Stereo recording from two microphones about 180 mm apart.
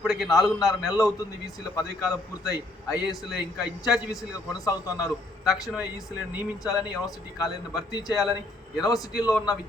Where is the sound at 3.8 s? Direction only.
Centre (ahead or behind).